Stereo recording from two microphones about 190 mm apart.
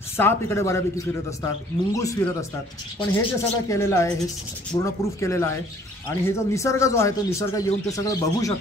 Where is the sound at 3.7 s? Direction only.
15° left (ahead or behind).